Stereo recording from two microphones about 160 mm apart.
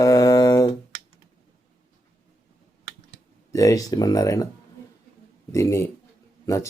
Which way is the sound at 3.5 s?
20° left (ahead or behind).